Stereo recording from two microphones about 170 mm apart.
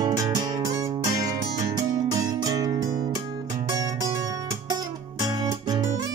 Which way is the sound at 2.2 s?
20° right (ahead or behind).